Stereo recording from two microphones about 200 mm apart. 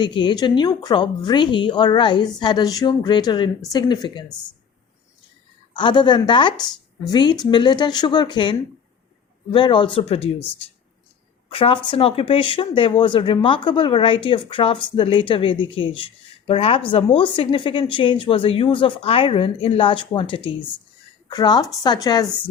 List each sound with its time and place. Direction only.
0.0 s a woman's voice: 25° left (ahead or behind)
5.7 s a woman's voice: 25° left (ahead or behind)
11.4 s a woman's voice: 25° left (ahead or behind)